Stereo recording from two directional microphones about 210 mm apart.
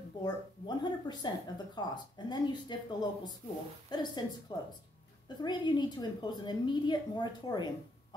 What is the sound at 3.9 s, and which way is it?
Speech, 20° left (ahead or behind).